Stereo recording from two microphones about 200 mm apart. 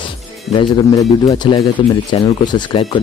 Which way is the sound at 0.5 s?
20° left (ahead or behind).